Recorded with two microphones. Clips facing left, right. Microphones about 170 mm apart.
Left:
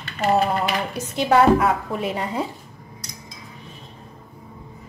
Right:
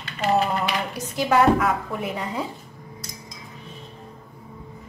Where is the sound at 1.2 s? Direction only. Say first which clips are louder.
Left 2 dB; 25° left (ahead or behind).